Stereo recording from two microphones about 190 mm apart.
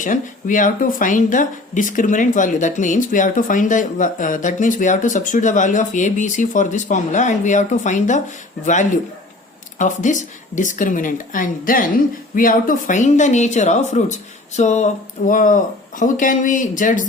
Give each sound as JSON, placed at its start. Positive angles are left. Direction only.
{"t": 0.0, "sound": "speech", "side_deg": 45}